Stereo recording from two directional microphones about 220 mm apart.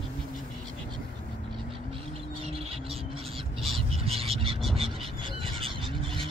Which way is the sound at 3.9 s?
25° right (ahead or behind).